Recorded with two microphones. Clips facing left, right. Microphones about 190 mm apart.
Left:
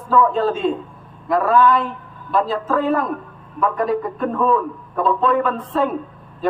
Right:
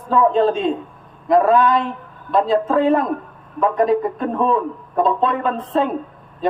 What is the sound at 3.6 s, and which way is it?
A man's voice, 20° right (ahead or behind).